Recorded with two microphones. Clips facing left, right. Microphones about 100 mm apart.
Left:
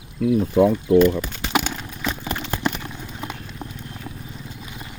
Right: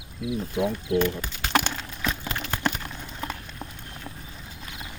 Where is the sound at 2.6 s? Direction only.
5° left (ahead or behind).